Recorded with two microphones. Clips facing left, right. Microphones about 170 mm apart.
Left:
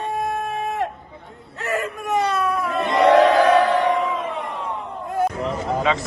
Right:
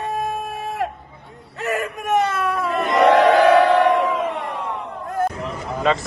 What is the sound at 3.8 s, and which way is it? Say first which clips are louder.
Crowd: right 3 dB; 85° right.